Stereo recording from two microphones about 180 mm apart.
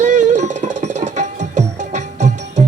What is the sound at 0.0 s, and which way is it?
Music, 40° right (ahead or behind).